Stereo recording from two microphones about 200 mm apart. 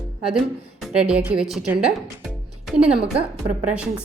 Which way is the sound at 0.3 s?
5° right (ahead or behind).